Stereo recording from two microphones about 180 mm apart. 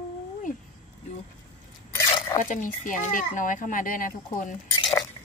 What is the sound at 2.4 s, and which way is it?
A child's voice, 45° left (ahead or behind).